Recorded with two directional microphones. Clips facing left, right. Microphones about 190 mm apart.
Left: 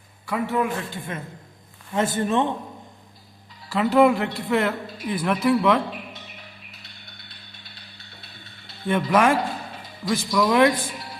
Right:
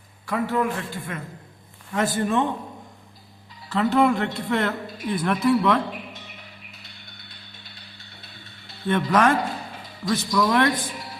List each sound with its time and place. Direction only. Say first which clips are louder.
0.3 s a man's voice: even; 10° left (ahead or behind)
1.1 s a man's voice: left 1 dB; 25° left (ahead or behind)
3.7 s a man's voice: left 2 dB; 10° left (ahead or behind)
8.9 s a man's voice: even; 10° left (ahead or behind)